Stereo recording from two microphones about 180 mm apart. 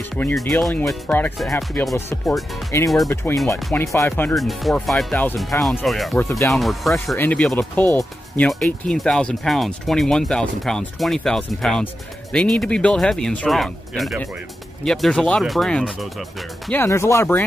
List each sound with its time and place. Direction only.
0.1 s speech: 5° left (ahead or behind)
2.0 s speech: 15° left (ahead or behind)
4.4 s speech: centre (ahead or behind)
6.1 s speech: 15° left (ahead or behind)
6.5 s speech: centre (ahead or behind)
16.7 s speech: 15° left (ahead or behind)